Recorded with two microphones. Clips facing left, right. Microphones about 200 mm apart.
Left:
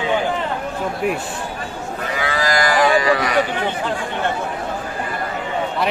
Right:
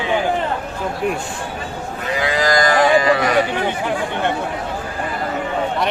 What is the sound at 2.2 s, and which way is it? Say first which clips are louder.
Moo: right 3 dB; 20° right (ahead or behind).